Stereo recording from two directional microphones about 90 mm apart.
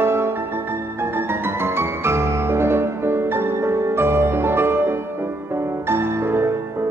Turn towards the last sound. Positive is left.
turn(degrees=-30)  # may be behind; listen again after turning